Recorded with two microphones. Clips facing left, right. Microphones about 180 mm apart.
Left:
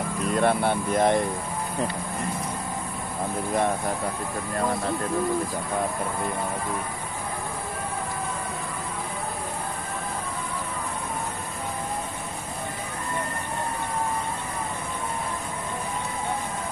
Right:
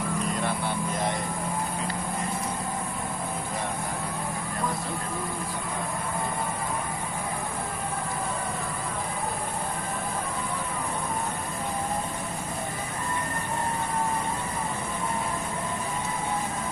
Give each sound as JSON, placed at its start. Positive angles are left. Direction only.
{"t": 0.4, "sound": "speech", "side_deg": 60}